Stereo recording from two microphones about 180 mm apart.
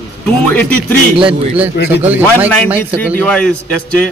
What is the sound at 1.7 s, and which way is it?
Speech, 70° left (ahead or behind).